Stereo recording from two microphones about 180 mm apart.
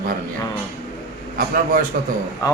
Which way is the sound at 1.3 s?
50° right (ahead or behind).